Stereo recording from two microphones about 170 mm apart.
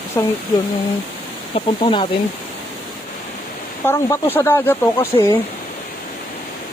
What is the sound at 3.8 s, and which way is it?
Speech, 15° left (ahead or behind).